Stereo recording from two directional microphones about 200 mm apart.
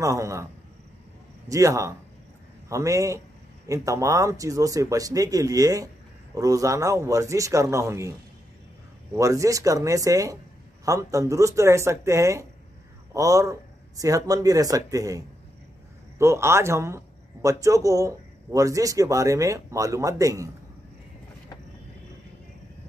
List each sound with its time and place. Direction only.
0.0 s speech: 15° right (ahead or behind)
1.5 s speech: 15° right (ahead or behind)